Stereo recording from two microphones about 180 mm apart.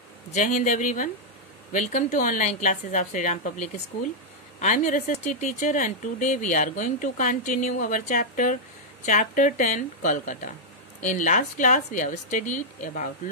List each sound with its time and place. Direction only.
0.3 s speech: 40° left (ahead or behind)